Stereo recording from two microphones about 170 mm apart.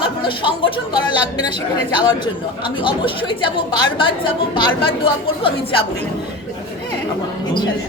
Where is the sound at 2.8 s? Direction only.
30° left (ahead or behind).